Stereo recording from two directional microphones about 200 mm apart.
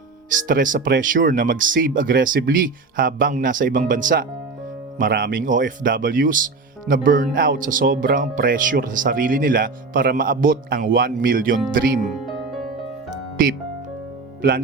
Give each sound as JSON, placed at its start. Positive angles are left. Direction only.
{"t": 0.3, "sound": "speech", "side_deg": -45}